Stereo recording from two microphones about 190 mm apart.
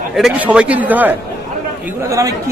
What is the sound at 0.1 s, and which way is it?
Speech, 5° right (ahead or behind).